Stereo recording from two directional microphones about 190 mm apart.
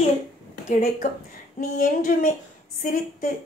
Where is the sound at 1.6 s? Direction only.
45° left (ahead or behind).